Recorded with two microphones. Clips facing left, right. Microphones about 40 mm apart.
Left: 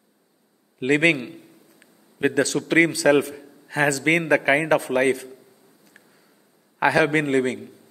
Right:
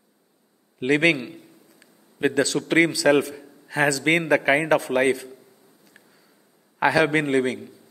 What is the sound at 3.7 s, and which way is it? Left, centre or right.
Speech, left.